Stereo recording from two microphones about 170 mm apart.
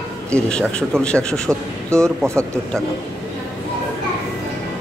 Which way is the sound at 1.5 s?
15° right (ahead or behind).